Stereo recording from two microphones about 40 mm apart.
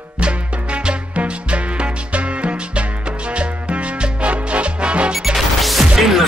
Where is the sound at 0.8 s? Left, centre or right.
Right.